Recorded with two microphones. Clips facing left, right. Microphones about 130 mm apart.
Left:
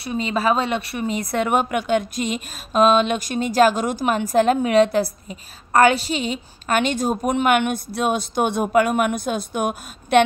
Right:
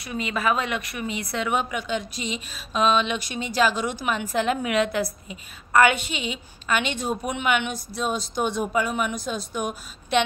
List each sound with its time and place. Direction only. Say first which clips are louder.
0.0 s a woman's voice: left 5 dB; 30° left (ahead or behind); by 10.2 s 55° left (ahead or behind)